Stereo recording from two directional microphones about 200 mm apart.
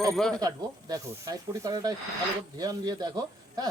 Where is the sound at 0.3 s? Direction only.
20° right (ahead or behind).